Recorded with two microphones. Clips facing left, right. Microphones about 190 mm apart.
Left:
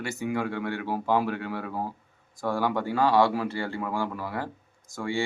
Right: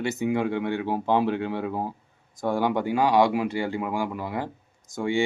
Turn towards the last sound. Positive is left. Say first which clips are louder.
# right 5 dB
turn(degrees=-20)  # may be behind; listen again after turning